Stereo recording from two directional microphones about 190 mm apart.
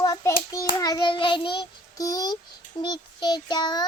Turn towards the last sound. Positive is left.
turn(degrees=20)  # may be behind; listen again after turning